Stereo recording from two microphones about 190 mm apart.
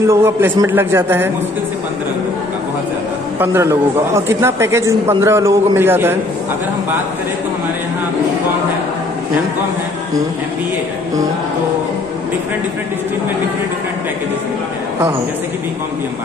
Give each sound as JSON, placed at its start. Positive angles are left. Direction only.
{"t": 0.0, "sound": "a man's voice", "side_deg": -15}
{"t": 3.3, "sound": "a man's voice", "side_deg": -15}